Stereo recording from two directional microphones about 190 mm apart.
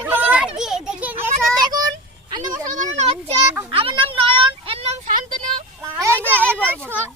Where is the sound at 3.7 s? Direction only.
30° right (ahead or behind).